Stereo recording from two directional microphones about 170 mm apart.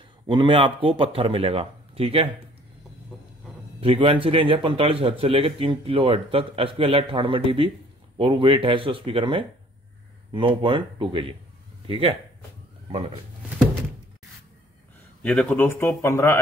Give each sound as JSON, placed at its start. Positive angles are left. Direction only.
{"t": 0.3, "sound": "a man's voice", "side_deg": -30}
{"t": 3.8, "sound": "a man's voice", "side_deg": -30}
{"t": 15.2, "sound": "speech", "side_deg": 5}